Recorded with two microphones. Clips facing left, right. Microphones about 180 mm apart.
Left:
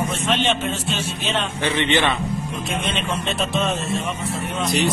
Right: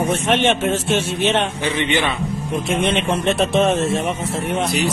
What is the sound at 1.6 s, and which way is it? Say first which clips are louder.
Speech: even; 10° right (ahead or behind).